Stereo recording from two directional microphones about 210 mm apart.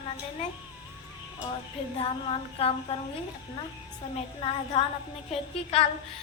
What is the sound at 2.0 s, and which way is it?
Speech, 25° left (ahead or behind).